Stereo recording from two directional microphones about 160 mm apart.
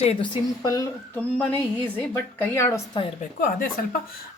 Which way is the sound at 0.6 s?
20° left (ahead or behind).